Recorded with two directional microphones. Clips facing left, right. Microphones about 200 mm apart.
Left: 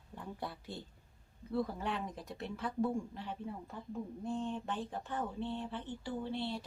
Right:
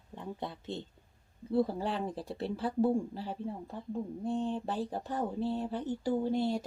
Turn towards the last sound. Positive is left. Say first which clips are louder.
# right 8 dB
turn(degrees=-45)  # may be behind; listen again after turning